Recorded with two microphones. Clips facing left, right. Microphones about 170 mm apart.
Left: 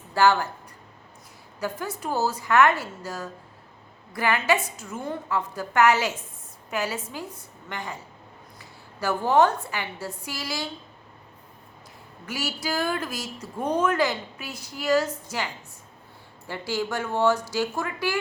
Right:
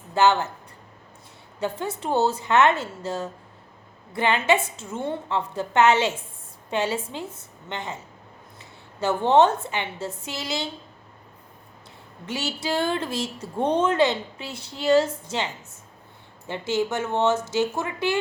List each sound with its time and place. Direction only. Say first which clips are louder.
0.1 s a woman's voice: right 1 dB; 20° right (ahead or behind)
1.5 s a woman's voice: right 3 dB; 25° right (ahead or behind)
12.2 s a woman's voice: right 2 dB; 25° right (ahead or behind)
16.5 s a woman's voice: right 4 dB; 20° right (ahead or behind)